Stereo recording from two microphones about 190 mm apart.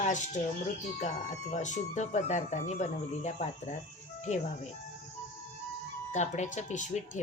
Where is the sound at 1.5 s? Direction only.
40° left (ahead or behind).